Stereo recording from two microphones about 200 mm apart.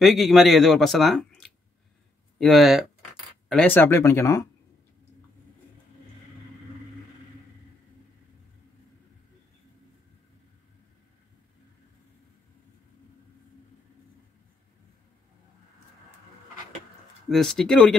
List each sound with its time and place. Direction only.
0.0 s speech: centre (ahead or behind)
17.3 s speech: centre (ahead or behind)